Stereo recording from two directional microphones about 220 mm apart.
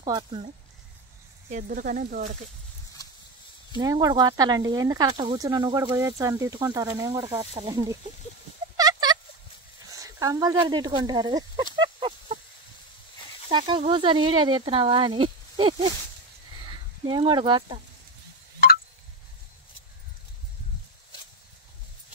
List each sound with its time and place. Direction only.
0.0 s speech: 20° right (ahead or behind)
1.5 s speech: 40° right (ahead or behind)
3.7 s speech: 15° right (ahead or behind)
8.7 s a sound: 20° right (ahead or behind)
9.8 s speech: 15° right (ahead or behind)
13.5 s speech: 20° right (ahead or behind)